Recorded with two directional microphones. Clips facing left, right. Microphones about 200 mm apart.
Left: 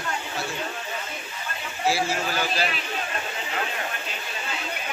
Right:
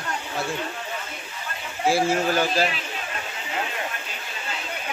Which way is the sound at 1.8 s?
50° right (ahead or behind).